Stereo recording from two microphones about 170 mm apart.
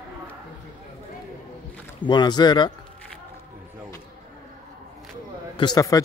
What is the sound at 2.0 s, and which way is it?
Speech, 25° left (ahead or behind).